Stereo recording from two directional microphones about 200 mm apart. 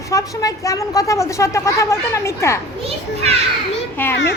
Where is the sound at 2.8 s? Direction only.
30° right (ahead or behind).